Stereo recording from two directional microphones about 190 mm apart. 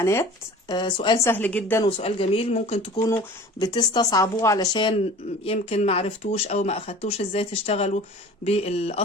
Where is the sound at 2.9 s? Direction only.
15° left (ahead or behind).